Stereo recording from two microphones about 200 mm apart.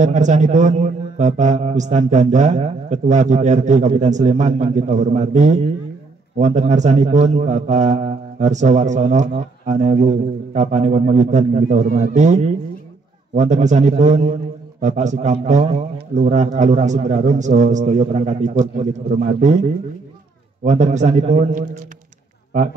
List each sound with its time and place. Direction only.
0.0 s a man's voice: 40° right (ahead or behind)
20.6 s a man's voice: 35° right (ahead or behind)